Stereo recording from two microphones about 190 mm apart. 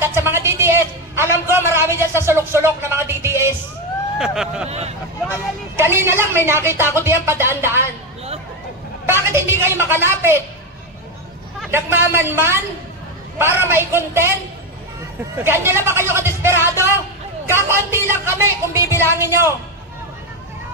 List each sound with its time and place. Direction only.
0.0 s a sound: 10° right (ahead or behind)
4.2 s speech: centre (ahead or behind)
4.6 s speech: 35° right (ahead or behind)
5.3 s speech: 15° right (ahead or behind)
9.0 s speech: 10° right (ahead or behind)
11.7 s speech: 10° right (ahead or behind)
15.3 s speech: 10° right (ahead or behind)